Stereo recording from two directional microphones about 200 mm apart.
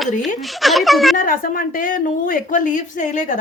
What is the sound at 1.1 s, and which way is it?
A woman's voice, 45° left (ahead or behind).